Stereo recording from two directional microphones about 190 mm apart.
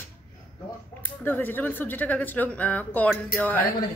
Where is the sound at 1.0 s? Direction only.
10° left (ahead or behind).